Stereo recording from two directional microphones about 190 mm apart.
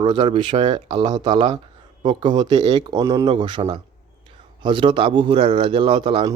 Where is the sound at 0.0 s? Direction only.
25° right (ahead or behind).